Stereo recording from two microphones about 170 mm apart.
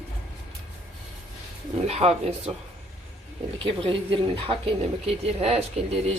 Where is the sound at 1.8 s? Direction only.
40° right (ahead or behind).